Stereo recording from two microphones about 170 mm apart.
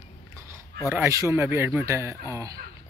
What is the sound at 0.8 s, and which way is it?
Speech, 15° right (ahead or behind).